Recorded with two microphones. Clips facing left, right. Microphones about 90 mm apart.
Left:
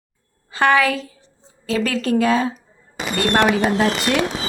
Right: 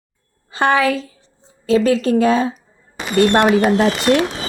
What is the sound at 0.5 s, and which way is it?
A woman's voice, 25° right (ahead or behind).